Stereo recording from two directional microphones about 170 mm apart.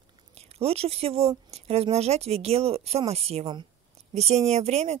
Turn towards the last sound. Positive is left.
turn(degrees=-40)  # may be behind; listen again after turning